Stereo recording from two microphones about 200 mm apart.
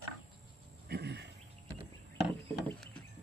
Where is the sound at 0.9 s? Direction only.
55° right (ahead or behind).